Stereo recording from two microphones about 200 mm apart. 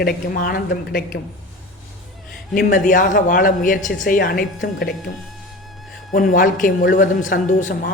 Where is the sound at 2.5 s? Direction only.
40° left (ahead or behind).